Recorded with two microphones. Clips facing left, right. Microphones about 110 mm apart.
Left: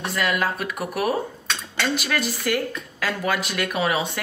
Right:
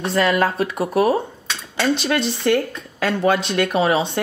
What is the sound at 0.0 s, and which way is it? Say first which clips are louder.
A woman's voice: right 6 dB; 30° right (ahead or behind).